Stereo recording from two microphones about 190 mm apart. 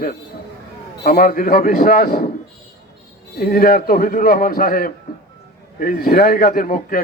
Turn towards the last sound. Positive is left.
turn(degrees=45)  # may be behind; listen again after turning